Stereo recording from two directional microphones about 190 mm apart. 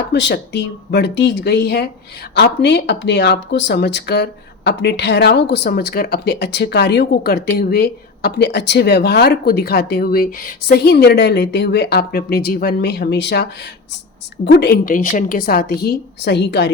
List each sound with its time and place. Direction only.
0.1 s speech: 70° left (ahead or behind)